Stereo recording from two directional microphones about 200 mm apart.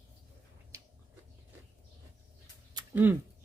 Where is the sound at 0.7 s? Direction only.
15° right (ahead or behind).